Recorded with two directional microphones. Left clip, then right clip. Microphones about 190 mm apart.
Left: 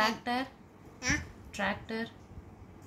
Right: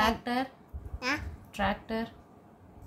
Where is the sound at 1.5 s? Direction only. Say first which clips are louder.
Right 3 dB; 25° right (ahead or behind).